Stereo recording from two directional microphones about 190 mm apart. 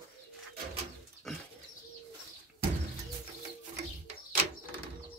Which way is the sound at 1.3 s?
Centre (ahead or behind).